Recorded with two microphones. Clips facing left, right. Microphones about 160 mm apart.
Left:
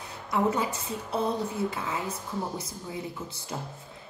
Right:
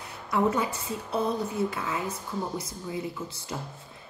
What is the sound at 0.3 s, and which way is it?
Speech, 25° left (ahead or behind).